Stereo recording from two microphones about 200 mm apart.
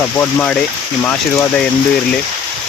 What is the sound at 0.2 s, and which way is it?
Speech, 10° left (ahead or behind).